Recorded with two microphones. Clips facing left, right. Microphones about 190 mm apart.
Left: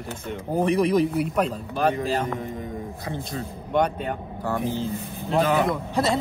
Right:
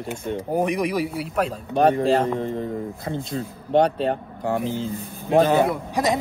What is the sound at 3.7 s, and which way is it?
Speech, 35° right (ahead or behind).